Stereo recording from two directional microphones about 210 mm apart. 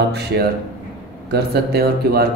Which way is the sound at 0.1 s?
50° right (ahead or behind).